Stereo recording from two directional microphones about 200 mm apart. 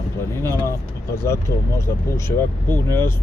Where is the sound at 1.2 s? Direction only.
15° left (ahead or behind).